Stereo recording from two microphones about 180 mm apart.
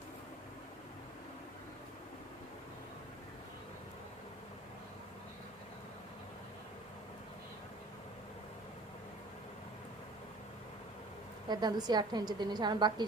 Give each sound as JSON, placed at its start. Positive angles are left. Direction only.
{"t": 11.4, "sound": "a woman's voice", "side_deg": -25}